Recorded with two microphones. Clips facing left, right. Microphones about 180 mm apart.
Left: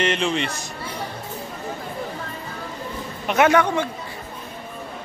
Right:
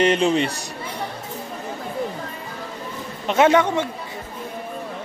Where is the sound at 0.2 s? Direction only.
40° right (ahead or behind).